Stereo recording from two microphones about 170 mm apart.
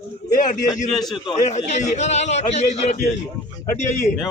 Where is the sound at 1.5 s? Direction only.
45° left (ahead or behind).